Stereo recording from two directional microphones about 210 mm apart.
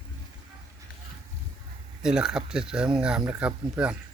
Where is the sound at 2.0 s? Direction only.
5° right (ahead or behind).